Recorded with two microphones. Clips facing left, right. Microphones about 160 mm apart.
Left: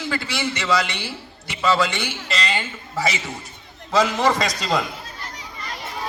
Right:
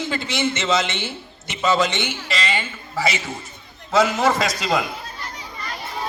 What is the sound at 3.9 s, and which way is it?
Speech, 5° right (ahead or behind).